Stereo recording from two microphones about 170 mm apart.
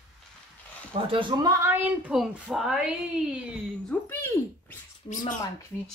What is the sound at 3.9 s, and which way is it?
Speech, 15° left (ahead or behind).